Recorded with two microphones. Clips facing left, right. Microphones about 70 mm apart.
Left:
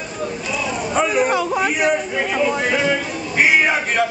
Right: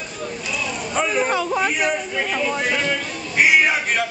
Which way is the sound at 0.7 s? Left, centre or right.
Centre.